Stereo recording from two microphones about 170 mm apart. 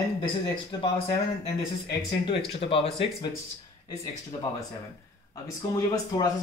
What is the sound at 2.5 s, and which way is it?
Speech, 35° left (ahead or behind).